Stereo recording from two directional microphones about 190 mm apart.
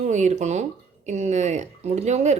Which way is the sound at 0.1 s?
40° right (ahead or behind).